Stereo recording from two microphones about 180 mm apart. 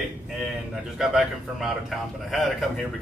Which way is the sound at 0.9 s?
Centre (ahead or behind).